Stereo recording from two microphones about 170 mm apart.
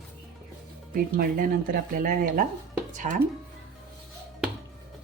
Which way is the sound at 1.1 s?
60° right (ahead or behind).